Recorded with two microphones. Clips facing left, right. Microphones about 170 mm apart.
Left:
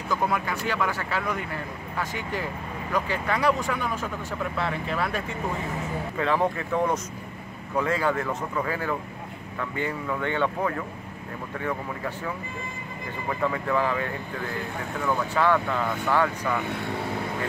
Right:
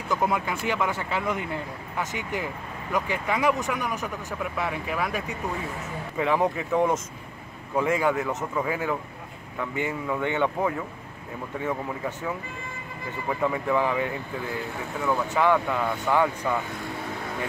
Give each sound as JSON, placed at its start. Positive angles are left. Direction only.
{"t": 0.2, "sound": "speech", "side_deg": -20}
{"t": 13.3, "sound": "speech", "side_deg": -15}